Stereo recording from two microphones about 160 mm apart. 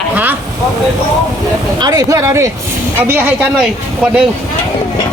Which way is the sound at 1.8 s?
25° right (ahead or behind).